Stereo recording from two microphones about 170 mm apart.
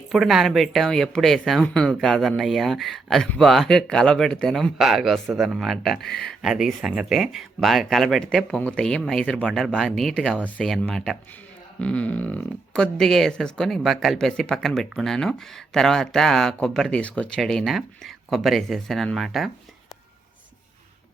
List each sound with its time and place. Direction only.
0.1 s speech: centre (ahead or behind)
6.0 s speech: 75° left (ahead or behind)
6.2 s speech: centre (ahead or behind)